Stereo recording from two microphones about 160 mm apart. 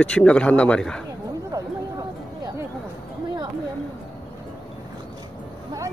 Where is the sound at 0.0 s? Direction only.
5° left (ahead or behind).